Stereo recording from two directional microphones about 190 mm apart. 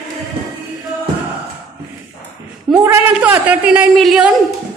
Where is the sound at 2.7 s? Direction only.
10° right (ahead or behind).